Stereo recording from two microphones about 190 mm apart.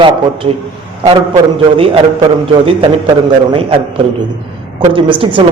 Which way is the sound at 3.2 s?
30° right (ahead or behind).